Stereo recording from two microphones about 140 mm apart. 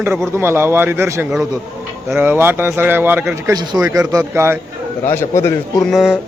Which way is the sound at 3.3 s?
25° right (ahead or behind).